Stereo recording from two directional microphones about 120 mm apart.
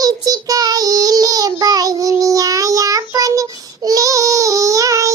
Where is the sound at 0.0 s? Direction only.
30° right (ahead or behind).